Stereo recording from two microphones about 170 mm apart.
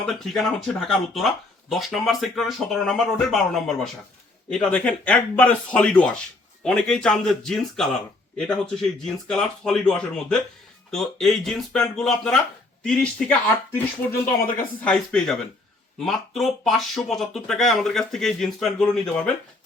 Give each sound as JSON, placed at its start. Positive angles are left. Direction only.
{"t": 0.0, "sound": "a man's voice", "side_deg": 5}
{"t": 14.4, "sound": "speech", "side_deg": 10}